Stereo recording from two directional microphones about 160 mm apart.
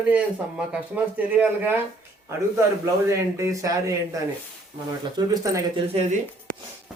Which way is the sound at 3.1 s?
20° right (ahead or behind).